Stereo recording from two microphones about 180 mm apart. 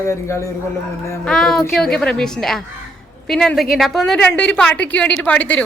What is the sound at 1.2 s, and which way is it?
A woman's voice, 5° left (ahead or behind).